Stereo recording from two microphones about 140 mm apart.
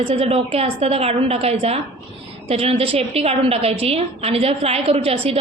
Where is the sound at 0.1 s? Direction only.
45° right (ahead or behind).